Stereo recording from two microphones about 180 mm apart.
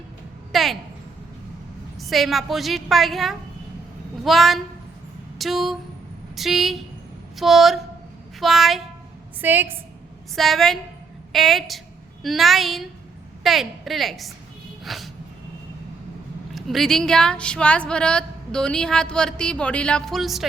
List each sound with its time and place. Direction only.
0.5 s a woman's voice: centre (ahead or behind)
2.0 s a woman's voice: centre (ahead or behind)
10.3 s a woman's voice: centre (ahead or behind)
14.8 s a sound: centre (ahead or behind)
16.6 s a woman's voice: centre (ahead or behind)